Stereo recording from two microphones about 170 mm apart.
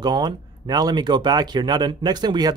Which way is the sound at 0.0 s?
25° right (ahead or behind).